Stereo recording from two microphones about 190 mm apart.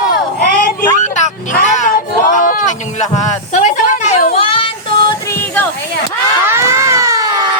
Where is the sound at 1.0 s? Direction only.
40° left (ahead or behind).